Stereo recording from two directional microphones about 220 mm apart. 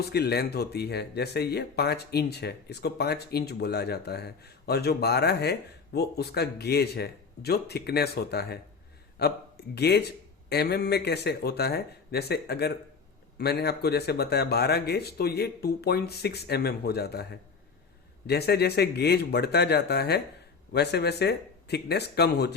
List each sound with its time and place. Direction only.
0.0 s speech: 45° left (ahead or behind)
18.3 s speech: 45° left (ahead or behind)